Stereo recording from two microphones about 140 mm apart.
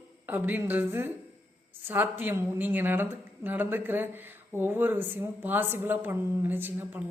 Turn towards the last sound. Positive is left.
turn(degrees=-15)  # may be behind; listen again after turning